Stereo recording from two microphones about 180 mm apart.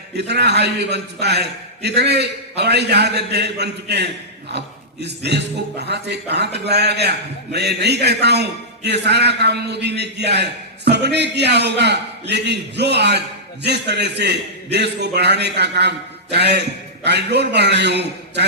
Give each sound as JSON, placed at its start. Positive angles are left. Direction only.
{"t": 0.2, "sound": "a man's voice", "side_deg": -70}